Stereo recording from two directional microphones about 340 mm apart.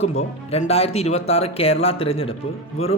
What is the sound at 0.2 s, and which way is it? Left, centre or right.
Speech, centre.